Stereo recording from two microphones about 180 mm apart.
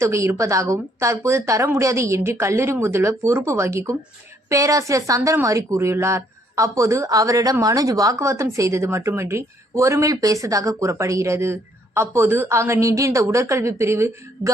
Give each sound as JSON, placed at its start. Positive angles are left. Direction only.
{"t": 0.0, "sound": "a woman's voice", "side_deg": -15}